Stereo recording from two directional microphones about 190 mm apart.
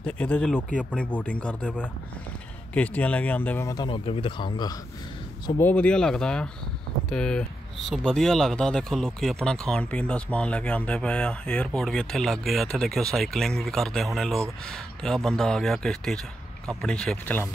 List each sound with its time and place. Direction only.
0.0 s speech: 5° left (ahead or behind); by 4.7 s 25° left (ahead or behind)
5.6 s speech: 10° left (ahead or behind)